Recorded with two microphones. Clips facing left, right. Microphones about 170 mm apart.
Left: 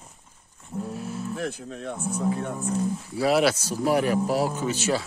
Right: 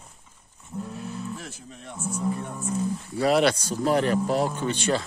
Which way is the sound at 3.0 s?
Centre (ahead or behind).